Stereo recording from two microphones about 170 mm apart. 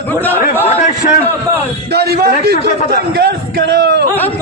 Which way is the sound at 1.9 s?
70° right (ahead or behind).